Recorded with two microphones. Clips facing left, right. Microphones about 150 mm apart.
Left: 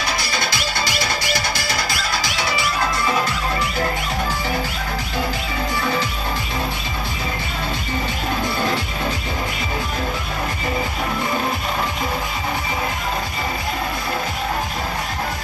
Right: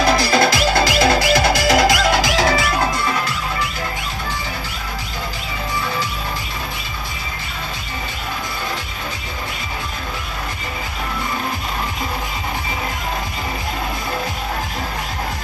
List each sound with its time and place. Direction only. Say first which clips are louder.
0.3 s music: right 9 dB; 90° right